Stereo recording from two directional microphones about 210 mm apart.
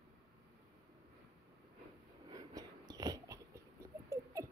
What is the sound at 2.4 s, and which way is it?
Dog, 15° right (ahead or behind).